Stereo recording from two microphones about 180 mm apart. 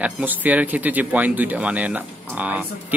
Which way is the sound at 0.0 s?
10° right (ahead or behind).